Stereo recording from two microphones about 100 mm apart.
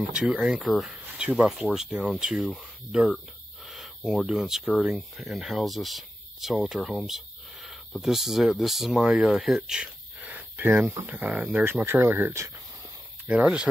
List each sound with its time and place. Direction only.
0.1 s speech: 10° right (ahead or behind)
3.6 s a sound: centre (ahead or behind)
4.3 s speech: 5° right (ahead or behind); by 12.4 s 25° right (ahead or behind)
13.3 s speech: 10° right (ahead or behind)